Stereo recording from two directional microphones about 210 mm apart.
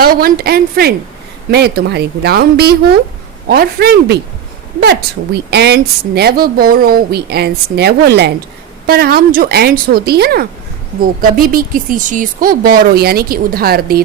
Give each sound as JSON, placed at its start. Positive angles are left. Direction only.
{"t": 0.0, "sound": "a woman's voice", "side_deg": -45}